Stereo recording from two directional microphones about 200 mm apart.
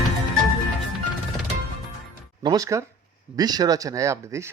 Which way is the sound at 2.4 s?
20° right (ahead or behind).